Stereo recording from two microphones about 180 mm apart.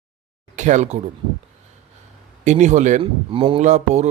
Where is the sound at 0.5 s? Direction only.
40° right (ahead or behind).